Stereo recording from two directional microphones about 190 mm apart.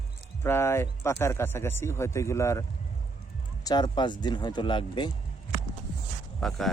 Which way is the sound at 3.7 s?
20° left (ahead or behind).